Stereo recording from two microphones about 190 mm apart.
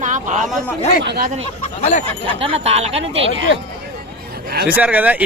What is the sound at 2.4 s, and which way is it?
Speech, 30° right (ahead or behind).